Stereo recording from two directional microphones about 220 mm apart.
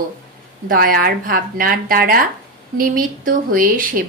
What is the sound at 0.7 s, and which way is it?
A woman's voice, 40° right (ahead or behind).